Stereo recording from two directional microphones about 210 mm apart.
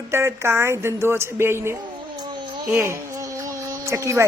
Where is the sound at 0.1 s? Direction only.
10° right (ahead or behind).